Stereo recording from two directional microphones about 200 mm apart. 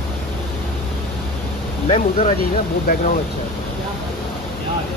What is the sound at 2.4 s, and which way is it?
Speech, 45° left (ahead or behind).